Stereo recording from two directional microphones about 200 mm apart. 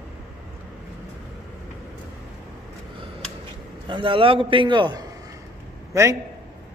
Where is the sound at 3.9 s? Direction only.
25° right (ahead or behind).